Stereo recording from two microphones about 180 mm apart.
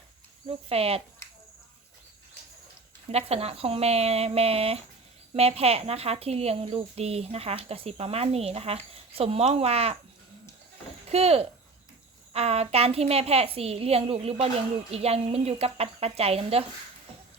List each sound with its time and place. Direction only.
0.4 s speech: 35° right (ahead or behind)
3.1 s speech: 35° right (ahead or behind)
11.1 s speech: 35° right (ahead or behind)